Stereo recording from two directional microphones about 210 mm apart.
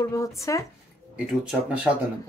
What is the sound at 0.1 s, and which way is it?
Speech, 15° left (ahead or behind).